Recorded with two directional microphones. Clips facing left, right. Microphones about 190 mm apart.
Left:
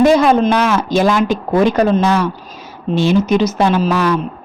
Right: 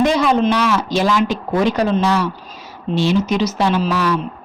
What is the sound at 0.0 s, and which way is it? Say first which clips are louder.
A woman's voice: left 4 dB; 50° left (ahead or behind).